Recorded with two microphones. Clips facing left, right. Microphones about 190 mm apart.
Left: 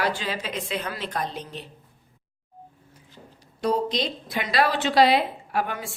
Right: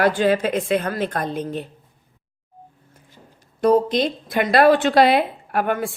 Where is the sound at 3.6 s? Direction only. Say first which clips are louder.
Right 8 dB; 50° right (ahead or behind).